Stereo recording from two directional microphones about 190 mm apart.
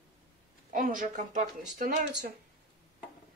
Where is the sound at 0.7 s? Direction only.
45° right (ahead or behind).